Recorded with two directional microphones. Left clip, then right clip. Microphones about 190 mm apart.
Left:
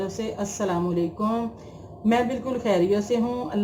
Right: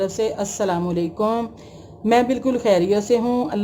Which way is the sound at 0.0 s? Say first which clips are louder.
Right 8 dB; 50° right (ahead or behind).